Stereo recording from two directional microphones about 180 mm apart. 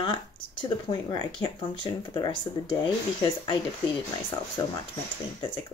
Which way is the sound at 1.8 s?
25° left (ahead or behind).